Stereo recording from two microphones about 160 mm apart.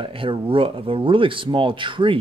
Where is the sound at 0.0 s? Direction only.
35° right (ahead or behind).